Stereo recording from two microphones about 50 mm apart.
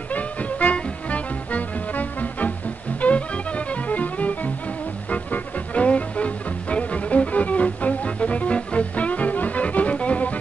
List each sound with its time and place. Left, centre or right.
0.1 s music: left